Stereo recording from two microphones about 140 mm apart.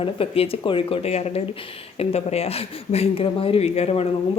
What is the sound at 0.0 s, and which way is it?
A woman's voice, 40° left (ahead or behind).